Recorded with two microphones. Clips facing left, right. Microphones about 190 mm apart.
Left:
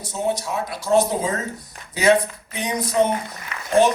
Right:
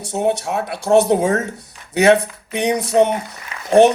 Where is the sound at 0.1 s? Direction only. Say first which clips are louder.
Right 5 dB; 70° right (ahead or behind).